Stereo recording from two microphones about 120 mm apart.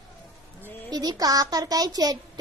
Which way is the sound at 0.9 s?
35° right (ahead or behind).